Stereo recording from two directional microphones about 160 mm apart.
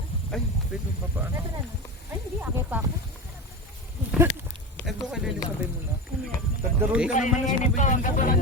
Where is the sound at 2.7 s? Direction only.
10° right (ahead or behind).